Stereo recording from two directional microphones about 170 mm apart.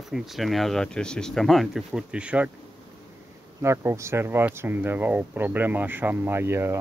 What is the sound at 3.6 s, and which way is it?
Speech, 15° right (ahead or behind).